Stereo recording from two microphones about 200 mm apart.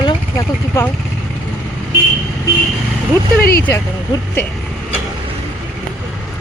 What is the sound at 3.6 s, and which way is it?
Speech, 10° left (ahead or behind).